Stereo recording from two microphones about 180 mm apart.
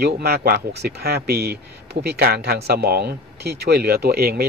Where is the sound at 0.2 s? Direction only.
60° right (ahead or behind).